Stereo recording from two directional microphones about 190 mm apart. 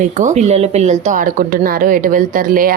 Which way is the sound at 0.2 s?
40° right (ahead or behind).